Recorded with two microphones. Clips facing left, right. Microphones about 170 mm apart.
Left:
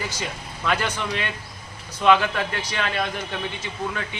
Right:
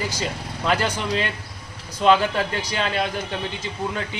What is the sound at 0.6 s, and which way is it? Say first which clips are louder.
Speech: right 2 dB; 35° right (ahead or behind).